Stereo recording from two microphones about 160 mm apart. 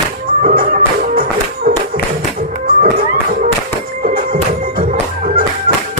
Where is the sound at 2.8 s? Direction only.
60° right (ahead or behind).